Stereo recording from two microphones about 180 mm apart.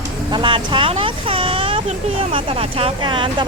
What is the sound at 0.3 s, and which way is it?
Speech, 25° right (ahead or behind).